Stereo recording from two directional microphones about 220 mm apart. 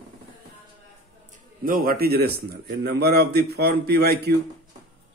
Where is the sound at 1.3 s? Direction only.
40° right (ahead or behind).